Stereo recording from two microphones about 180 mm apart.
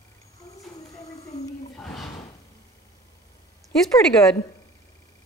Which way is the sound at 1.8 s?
5° left (ahead or behind).